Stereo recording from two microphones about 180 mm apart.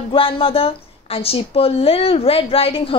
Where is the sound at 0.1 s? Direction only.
30° left (ahead or behind).